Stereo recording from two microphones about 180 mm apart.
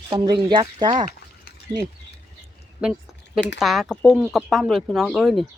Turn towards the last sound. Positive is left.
turn(degrees=0)  # may be behind; listen again after turning